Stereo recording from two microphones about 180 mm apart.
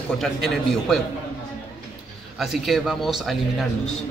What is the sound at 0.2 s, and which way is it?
Speech, centre (ahead or behind).